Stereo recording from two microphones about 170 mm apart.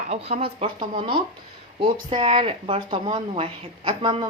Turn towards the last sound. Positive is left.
turn(degrees=-30)  # may be behind; listen again after turning